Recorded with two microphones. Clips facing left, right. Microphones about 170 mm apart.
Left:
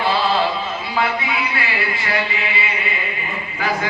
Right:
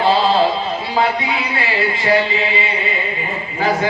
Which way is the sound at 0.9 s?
30° right (ahead or behind).